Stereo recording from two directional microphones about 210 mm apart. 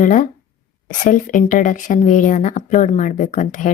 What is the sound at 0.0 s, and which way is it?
A woman's voice, 40° left (ahead or behind).